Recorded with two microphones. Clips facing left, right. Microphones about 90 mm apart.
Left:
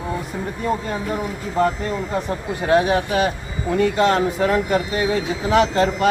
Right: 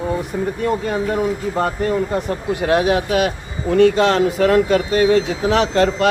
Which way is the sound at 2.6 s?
75° right (ahead or behind).